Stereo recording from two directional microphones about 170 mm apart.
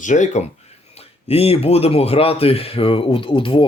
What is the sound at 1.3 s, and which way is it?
Speech, 35° left (ahead or behind).